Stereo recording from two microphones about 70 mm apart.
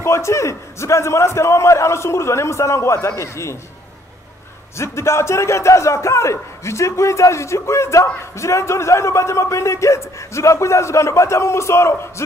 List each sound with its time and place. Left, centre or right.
0.0 s a man's voice: left
4.7 s a man's voice: left